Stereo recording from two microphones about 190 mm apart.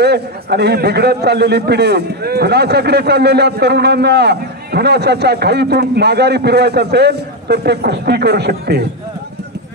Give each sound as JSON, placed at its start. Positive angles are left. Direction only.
{"t": 0.0, "sound": "a man's voice", "side_deg": -60}